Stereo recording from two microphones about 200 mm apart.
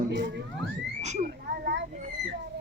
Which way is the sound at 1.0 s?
35° right (ahead or behind).